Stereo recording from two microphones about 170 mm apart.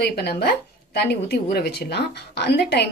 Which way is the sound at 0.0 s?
70° left (ahead or behind).